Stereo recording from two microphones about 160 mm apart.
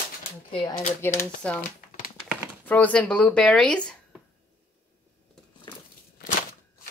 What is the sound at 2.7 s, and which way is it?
Speech, 10° left (ahead or behind).